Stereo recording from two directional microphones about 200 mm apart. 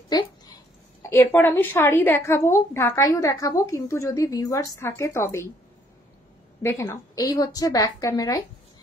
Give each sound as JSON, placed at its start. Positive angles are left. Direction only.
{"t": 0.1, "sound": "a child's voice", "side_deg": 20}
{"t": 6.6, "sound": "a woman's voice", "side_deg": 15}